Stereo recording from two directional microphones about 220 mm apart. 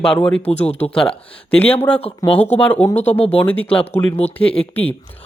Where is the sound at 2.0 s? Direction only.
25° left (ahead or behind).